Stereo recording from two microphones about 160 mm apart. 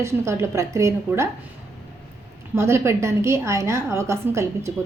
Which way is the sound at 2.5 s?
15° right (ahead or behind).